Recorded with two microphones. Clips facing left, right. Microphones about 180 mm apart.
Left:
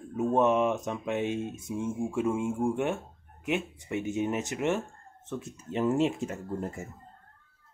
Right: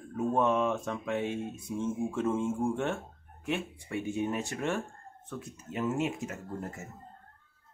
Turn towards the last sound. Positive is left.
turn(degrees=30)  # may be behind; listen again after turning